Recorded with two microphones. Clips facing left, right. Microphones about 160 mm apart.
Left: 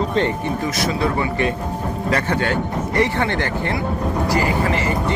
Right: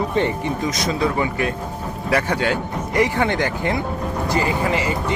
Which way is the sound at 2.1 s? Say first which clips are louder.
Right 1 dB; 10° right (ahead or behind).